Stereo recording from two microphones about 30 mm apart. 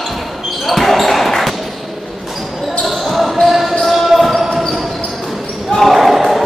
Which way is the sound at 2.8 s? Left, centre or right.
Centre.